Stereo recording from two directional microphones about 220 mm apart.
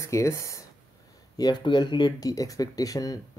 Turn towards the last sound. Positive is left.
turn(degrees=15)  # may be behind; listen again after turning